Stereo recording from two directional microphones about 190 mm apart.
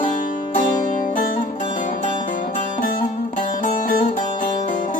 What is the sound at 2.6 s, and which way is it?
Music, 40° left (ahead or behind).